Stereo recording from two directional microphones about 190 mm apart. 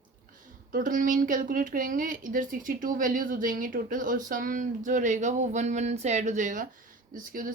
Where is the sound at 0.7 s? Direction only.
45° right (ahead or behind).